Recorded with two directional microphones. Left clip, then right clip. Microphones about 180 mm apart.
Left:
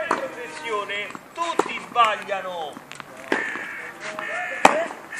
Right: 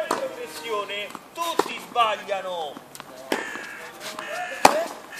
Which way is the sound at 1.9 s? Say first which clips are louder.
Left 2 dB; 45° right (ahead or behind).